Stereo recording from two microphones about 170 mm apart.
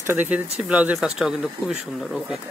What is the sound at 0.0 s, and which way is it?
Speech, 10° right (ahead or behind).